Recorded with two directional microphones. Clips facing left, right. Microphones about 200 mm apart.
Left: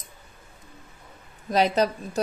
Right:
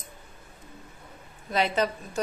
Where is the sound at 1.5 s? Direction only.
40° left (ahead or behind).